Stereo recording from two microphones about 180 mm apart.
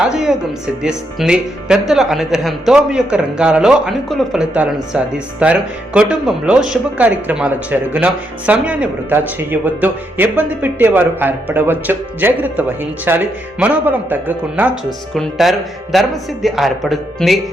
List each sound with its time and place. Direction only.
0.0 s speech: 5° right (ahead or behind)